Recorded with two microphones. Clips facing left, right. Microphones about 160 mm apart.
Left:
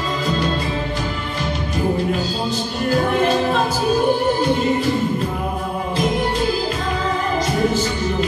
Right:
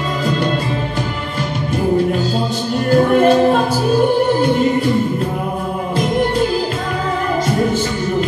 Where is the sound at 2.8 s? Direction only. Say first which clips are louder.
Right 6 dB; 50° right (ahead or behind).